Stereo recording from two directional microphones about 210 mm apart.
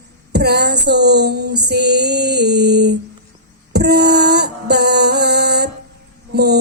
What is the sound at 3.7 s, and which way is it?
Music, 50° right (ahead or behind).